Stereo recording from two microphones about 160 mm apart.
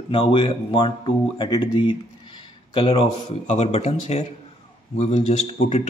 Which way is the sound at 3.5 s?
40° left (ahead or behind).